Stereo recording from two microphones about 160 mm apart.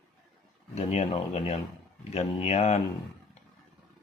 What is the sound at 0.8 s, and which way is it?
Speech, 40° left (ahead or behind).